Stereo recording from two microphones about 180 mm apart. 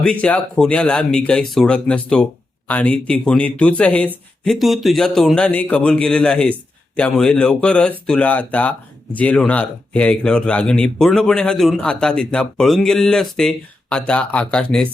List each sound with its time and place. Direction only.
0.0 s a man's voice: 5° left (ahead or behind)